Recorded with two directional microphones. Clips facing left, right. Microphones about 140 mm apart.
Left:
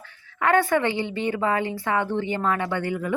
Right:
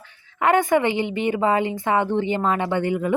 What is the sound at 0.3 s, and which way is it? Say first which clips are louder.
Speech: right 2 dB; 20° right (ahead or behind).